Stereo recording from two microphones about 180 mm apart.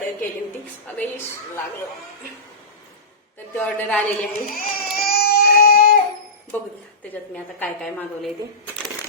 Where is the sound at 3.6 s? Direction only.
10° left (ahead or behind).